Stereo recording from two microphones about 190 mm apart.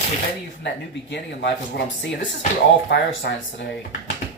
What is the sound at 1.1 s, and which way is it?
Speech, 65° left (ahead or behind).